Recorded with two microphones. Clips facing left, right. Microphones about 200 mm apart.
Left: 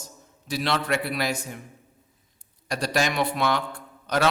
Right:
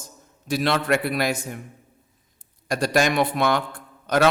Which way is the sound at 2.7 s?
50° right (ahead or behind).